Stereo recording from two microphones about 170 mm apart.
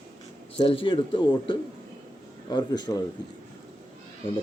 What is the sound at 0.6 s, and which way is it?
A man's voice, 35° left (ahead or behind).